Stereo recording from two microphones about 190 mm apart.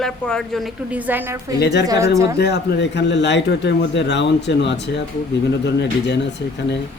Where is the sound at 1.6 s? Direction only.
65° left (ahead or behind).